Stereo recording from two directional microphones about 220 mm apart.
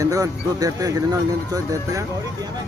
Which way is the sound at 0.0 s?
15° right (ahead or behind).